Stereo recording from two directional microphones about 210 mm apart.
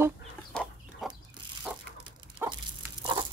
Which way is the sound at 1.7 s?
Centre (ahead or behind).